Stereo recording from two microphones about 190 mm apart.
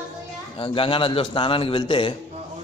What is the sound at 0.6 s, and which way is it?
A man's voice, 25° left (ahead or behind).